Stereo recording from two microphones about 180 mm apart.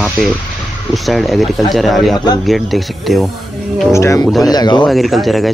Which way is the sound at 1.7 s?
Centre (ahead or behind).